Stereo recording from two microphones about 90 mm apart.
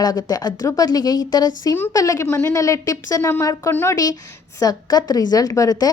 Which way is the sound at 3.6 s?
30° left (ahead or behind).